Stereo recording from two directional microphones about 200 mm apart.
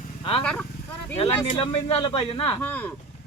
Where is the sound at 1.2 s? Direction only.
30° left (ahead or behind).